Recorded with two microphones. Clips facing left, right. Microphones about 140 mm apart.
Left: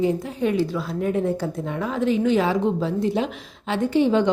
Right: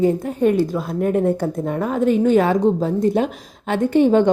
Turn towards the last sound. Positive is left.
turn(degrees=-50)  # may be behind; listen again after turning